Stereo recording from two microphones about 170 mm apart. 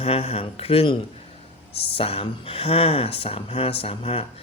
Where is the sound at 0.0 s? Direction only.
35° left (ahead or behind).